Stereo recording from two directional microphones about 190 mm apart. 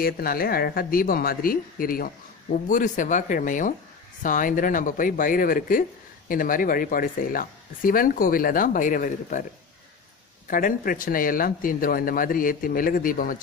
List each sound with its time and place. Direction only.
0.0 s speech: 50° left (ahead or behind)
10.5 s speech: 45° left (ahead or behind)